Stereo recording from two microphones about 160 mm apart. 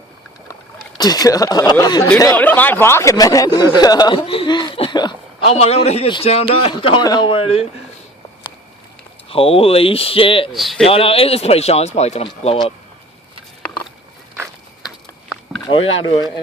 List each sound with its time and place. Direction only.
0.9 s speech: 25° left (ahead or behind)
2.3 s speech: 10° left (ahead or behind); by 5.1 s 25° left (ahead or behind)
5.5 s a man's voice: 40° left (ahead or behind)
9.3 s a man's voice: 35° left (ahead or behind)
10.5 s speech: centre (ahead or behind)
10.8 s a man's voice: 35° left (ahead or behind)
14.8 s a sound: centre (ahead or behind)